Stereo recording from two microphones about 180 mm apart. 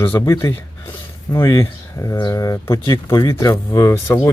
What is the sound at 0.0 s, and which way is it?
Speech, 15° left (ahead or behind).